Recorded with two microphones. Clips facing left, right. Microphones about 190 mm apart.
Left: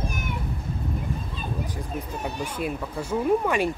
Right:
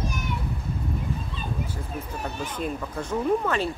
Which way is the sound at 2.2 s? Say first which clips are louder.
Left 1 dB; 10° left (ahead or behind).